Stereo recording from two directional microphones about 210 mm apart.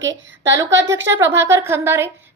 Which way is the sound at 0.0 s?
15° right (ahead or behind).